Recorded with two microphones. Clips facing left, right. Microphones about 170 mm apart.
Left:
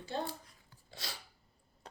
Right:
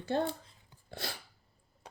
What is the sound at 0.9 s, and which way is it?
Dog, 55° right (ahead or behind).